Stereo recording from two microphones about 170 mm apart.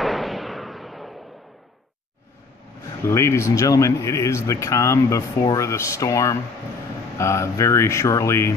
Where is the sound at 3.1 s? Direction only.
15° left (ahead or behind).